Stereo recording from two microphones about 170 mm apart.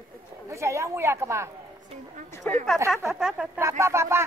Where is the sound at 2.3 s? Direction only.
15° left (ahead or behind).